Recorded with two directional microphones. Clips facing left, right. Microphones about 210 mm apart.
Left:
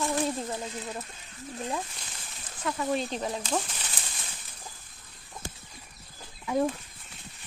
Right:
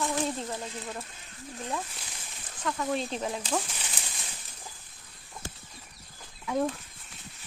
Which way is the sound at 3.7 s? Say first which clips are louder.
Even; 10° right (ahead or behind).